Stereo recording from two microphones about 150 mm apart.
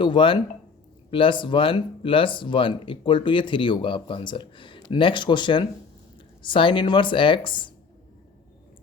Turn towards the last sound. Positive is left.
turn(degrees=35)  # may be behind; listen again after turning